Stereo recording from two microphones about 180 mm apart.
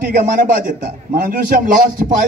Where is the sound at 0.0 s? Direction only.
50° right (ahead or behind).